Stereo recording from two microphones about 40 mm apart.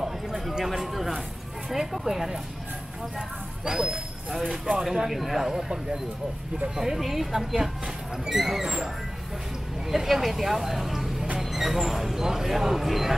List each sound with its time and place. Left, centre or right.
0.0 s a sound: centre
1.7 s speech: centre
9.8 s speech: centre